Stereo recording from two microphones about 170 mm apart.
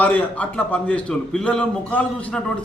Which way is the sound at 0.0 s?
10° left (ahead or behind).